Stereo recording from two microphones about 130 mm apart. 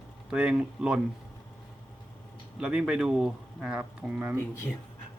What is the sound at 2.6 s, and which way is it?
Speech, 5° right (ahead or behind).